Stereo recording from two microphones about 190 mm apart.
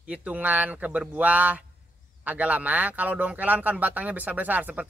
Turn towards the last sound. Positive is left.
turn(degrees=-10)  # may be behind; listen again after turning